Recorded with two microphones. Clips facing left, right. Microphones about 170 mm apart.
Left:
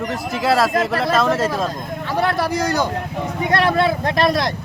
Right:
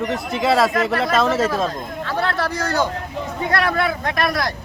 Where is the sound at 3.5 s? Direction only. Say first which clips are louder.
Left 4 dB; 25° left (ahead or behind).